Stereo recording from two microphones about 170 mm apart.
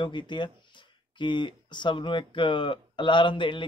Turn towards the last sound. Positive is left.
turn(degrees=30)  # may be behind; listen again after turning